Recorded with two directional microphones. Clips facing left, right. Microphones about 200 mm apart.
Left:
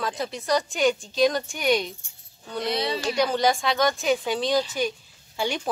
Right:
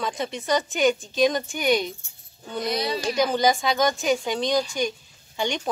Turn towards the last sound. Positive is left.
turn(degrees=5)  # may be behind; listen again after turning